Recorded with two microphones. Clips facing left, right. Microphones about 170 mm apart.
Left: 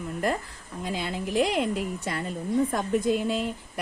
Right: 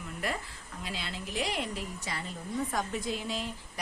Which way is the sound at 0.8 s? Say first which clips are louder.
Left 9 dB; 50° left (ahead or behind).